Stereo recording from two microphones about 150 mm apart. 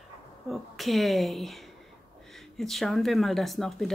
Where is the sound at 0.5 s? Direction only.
Centre (ahead or behind).